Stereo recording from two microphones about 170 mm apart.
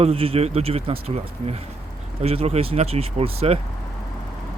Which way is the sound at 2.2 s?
35° right (ahead or behind).